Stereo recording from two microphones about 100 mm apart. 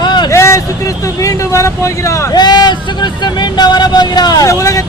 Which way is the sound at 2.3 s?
45° left (ahead or behind).